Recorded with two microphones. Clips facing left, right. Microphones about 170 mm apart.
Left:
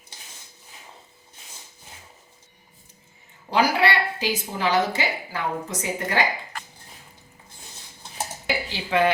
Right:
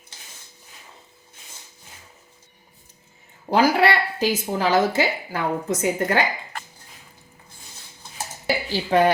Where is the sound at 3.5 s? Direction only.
50° right (ahead or behind).